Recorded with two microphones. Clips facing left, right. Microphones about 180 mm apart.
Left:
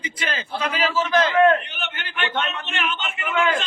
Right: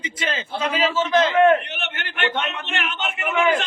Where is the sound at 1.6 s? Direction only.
70° right (ahead or behind).